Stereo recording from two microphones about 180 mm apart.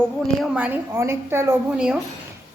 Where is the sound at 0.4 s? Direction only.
5° right (ahead or behind).